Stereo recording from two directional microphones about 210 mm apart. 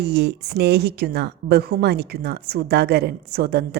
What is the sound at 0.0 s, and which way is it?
Speech, 50° right (ahead or behind).